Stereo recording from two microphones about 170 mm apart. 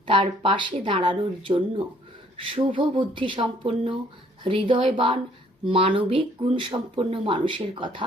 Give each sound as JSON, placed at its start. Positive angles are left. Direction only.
{"t": 0.1, "sound": "speech", "side_deg": -30}